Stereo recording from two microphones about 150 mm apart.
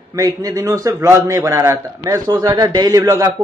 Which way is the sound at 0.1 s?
25° right (ahead or behind).